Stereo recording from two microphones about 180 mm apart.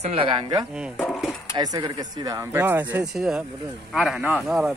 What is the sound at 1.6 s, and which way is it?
Speech, 20° right (ahead or behind).